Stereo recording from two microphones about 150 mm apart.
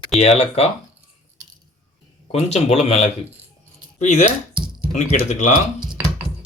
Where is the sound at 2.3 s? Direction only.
45° left (ahead or behind).